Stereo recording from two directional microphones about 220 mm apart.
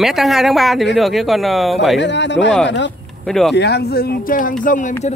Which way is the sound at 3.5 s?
50° left (ahead or behind).